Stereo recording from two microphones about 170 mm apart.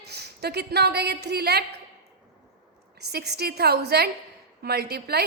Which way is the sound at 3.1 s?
70° right (ahead or behind).